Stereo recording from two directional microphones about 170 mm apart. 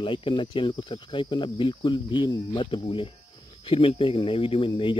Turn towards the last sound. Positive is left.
turn(degrees=30)  # may be behind; listen again after turning